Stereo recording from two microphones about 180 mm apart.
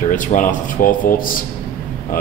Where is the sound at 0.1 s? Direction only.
45° left (ahead or behind).